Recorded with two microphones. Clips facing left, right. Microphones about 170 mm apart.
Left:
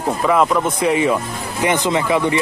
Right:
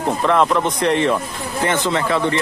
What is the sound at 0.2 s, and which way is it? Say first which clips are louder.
Speech: left 1 dB; 5° left (ahead or behind).